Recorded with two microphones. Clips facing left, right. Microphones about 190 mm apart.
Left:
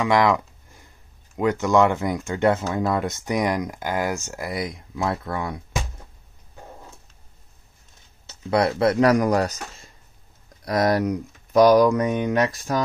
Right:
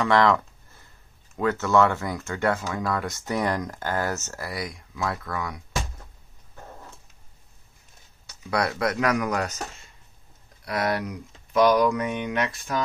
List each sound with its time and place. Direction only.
0.0 s a sound: 10° left (ahead or behind)
1.3 s speech: 15° left (ahead or behind)
6.5 s dog: 10° left (ahead or behind)
8.3 s speech: 25° left (ahead or behind)